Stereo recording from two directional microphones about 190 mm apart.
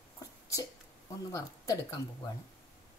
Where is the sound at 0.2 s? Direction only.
15° left (ahead or behind).